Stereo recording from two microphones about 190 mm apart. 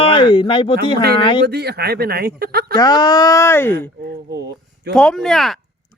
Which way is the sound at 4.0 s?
60° right (ahead or behind).